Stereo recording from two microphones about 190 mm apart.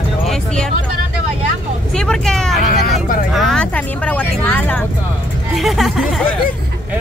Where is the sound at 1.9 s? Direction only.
5° left (ahead or behind).